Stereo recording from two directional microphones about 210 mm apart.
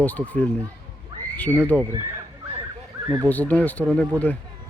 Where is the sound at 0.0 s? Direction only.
5° left (ahead or behind).